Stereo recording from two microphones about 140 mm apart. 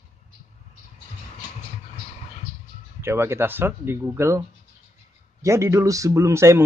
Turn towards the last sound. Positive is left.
turn(degrees=-20)  # may be behind; listen again after turning